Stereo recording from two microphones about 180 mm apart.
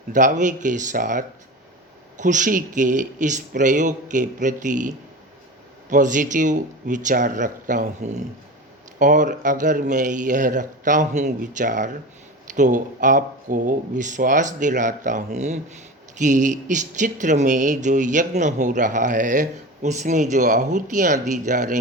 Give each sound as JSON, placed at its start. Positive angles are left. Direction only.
{"t": 0.1, "sound": "speech", "side_deg": -45}
{"t": 5.9, "sound": "speech", "side_deg": -45}